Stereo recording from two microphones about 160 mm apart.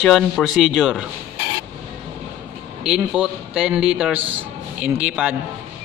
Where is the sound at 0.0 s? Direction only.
Centre (ahead or behind).